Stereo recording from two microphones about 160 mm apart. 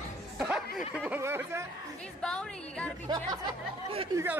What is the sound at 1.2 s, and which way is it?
Speech, 15° right (ahead or behind).